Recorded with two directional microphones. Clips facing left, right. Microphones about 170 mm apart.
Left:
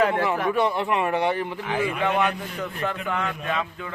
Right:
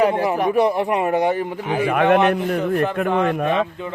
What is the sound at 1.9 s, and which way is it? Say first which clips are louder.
Speech: right 11 dB; 65° right (ahead or behind).